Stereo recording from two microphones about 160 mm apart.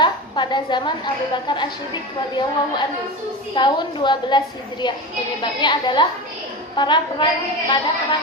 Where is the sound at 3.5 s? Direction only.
30° left (ahead or behind).